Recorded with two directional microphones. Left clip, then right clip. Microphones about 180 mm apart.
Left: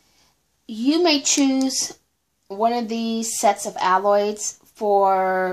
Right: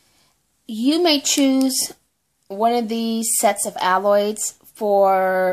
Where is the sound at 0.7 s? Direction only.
30° right (ahead or behind).